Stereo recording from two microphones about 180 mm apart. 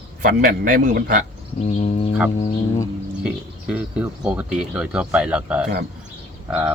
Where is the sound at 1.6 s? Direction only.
35° left (ahead or behind).